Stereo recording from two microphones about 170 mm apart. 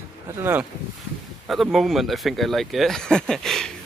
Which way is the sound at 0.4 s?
10° right (ahead or behind).